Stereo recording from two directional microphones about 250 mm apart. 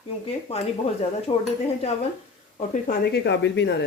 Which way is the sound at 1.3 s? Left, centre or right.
Centre.